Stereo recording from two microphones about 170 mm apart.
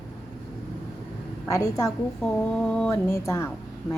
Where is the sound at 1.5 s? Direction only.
20° left (ahead or behind).